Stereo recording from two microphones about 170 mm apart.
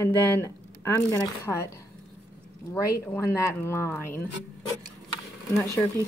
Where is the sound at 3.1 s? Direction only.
15° left (ahead or behind).